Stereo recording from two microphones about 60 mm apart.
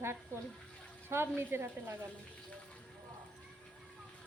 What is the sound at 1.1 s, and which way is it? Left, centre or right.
Speech, right.